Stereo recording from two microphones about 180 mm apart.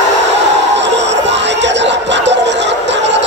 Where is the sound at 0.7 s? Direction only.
80° right.